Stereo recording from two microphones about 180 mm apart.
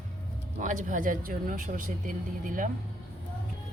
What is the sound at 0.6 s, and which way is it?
Speech, 45° right (ahead or behind).